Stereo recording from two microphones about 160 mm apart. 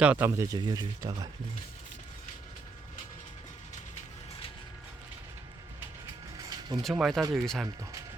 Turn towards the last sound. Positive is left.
turn(degrees=0)  # may be behind; listen again after turning